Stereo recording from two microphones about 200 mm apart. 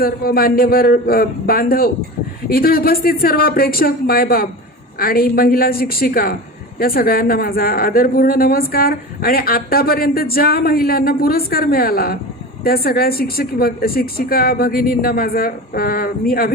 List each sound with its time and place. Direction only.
0.0 s a woman's voice: 50° left (ahead or behind)